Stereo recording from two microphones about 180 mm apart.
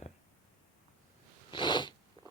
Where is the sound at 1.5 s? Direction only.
25° left (ahead or behind).